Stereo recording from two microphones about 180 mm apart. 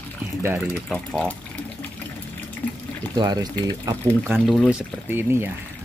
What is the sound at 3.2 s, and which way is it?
Speech, 20° right (ahead or behind).